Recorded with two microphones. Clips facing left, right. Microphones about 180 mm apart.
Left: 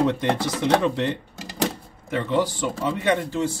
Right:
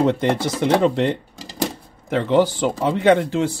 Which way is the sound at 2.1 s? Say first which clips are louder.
Right 6 dB; 80° right.